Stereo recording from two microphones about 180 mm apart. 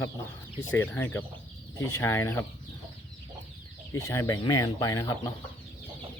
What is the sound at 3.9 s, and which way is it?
Speech, 15° left (ahead or behind).